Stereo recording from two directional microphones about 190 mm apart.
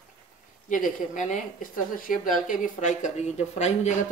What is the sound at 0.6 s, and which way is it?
Speech, 45° left (ahead or behind).